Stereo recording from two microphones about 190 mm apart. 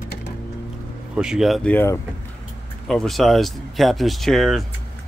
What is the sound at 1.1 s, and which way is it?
Speech, 5° right (ahead or behind).